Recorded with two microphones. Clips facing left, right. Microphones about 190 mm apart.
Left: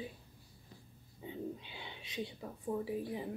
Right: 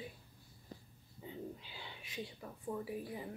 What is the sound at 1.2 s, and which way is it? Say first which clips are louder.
Speech: left 4 dB; 20° left (ahead or behind).